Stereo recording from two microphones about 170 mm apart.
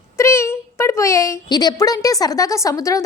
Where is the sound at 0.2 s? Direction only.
15° left (ahead or behind).